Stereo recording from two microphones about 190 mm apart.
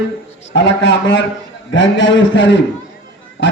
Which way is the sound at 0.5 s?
70° left (ahead or behind).